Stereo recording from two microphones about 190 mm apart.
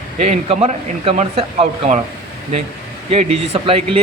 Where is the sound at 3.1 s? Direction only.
35° right (ahead or behind).